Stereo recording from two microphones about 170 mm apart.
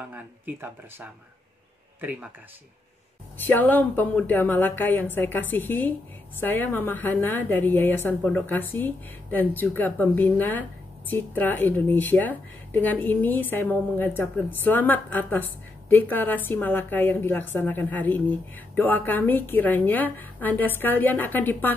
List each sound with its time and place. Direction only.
0.1 s speech: 10° right (ahead or behind)
3.4 s speech: 10° left (ahead or behind)